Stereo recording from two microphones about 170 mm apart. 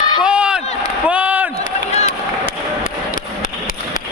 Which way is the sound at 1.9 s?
40° left (ahead or behind).